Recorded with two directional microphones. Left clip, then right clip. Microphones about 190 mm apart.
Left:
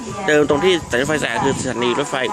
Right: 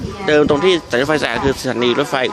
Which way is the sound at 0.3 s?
15° right (ahead or behind).